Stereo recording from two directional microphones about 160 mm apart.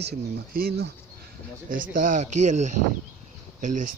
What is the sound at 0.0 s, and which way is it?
Speech, 70° right (ahead or behind).